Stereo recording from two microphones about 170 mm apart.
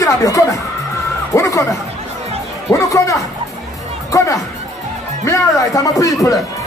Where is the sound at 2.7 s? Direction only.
20° left (ahead or behind).